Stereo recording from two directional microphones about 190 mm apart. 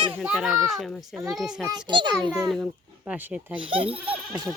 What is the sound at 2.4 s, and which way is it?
Speech, 5° right (ahead or behind).